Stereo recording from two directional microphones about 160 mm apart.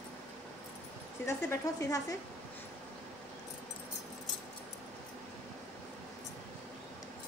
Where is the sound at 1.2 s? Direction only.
20° left (ahead or behind).